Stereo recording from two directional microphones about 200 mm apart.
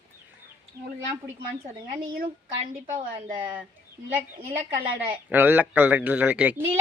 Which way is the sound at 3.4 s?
5° right (ahead or behind).